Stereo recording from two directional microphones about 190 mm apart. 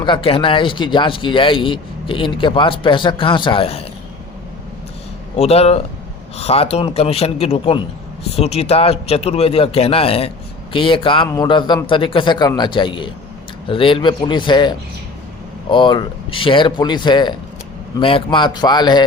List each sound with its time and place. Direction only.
0.0 s speech: 25° left (ahead or behind)
5.4 s a man's voice: 30° left (ahead or behind)